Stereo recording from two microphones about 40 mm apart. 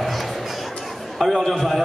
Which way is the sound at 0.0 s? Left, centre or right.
Centre.